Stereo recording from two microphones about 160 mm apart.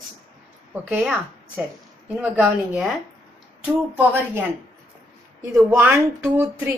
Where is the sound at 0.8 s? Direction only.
10° right (ahead or behind).